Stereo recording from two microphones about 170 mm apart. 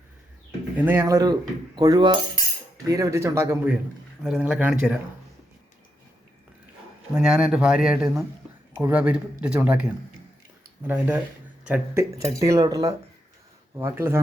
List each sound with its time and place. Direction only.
0.8 s speech: 15° right (ahead or behind)
7.1 s speech: 5° right (ahead or behind)
10.8 s speech: 10° right (ahead or behind)